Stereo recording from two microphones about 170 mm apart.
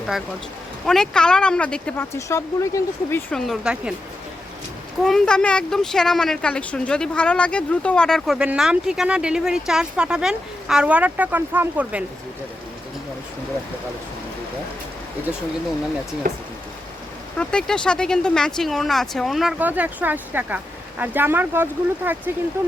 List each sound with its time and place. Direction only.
0.9 s speech: 5° left (ahead or behind)
2.1 s speech: 20° left (ahead or behind)
3.3 s speech: centre (ahead or behind)
5.0 s speech: 5° left (ahead or behind)
16.2 s speech: 55° right (ahead or behind)
17.3 s speech: 5° left (ahead or behind); by 22.7 s 15° right (ahead or behind)